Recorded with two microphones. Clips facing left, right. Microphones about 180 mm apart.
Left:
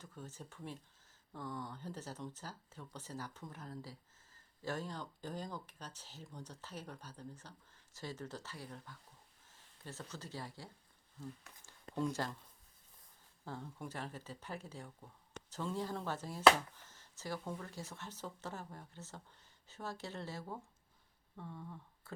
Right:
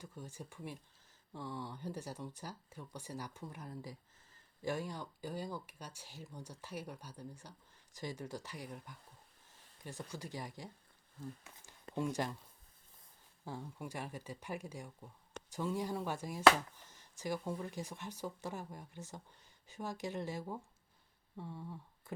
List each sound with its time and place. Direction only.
0.0 s speech: 10° right (ahead or behind)
13.4 s speech: 15° right (ahead or behind)
21.3 s a sound: 15° right (ahead or behind)